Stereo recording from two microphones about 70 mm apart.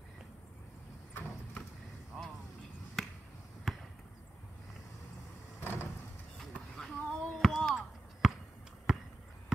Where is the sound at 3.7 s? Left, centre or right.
Centre.